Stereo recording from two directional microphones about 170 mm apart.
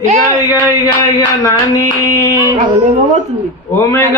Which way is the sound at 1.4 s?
20° left (ahead or behind).